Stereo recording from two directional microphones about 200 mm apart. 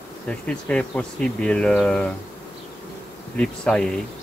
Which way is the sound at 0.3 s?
5° left (ahead or behind).